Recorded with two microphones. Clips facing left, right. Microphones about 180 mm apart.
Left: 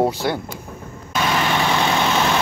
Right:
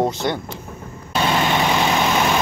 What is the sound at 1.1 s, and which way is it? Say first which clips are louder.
Vehicle: right 1 dB; 25° right (ahead or behind).